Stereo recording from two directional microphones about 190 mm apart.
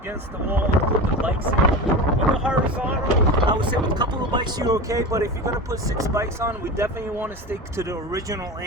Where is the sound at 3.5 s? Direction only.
25° right (ahead or behind).